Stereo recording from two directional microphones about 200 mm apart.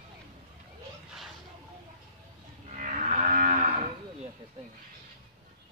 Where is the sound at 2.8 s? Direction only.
40° right (ahead or behind).